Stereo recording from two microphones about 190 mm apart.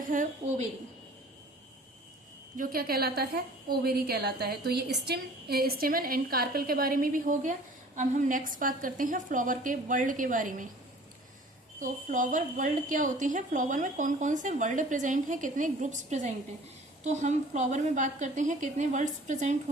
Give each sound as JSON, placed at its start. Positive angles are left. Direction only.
{"t": 0.1, "sound": "a woman's voice", "side_deg": -40}
{"t": 2.6, "sound": "a woman's voice", "side_deg": -50}
{"t": 11.8, "sound": "a woman's voice", "side_deg": -40}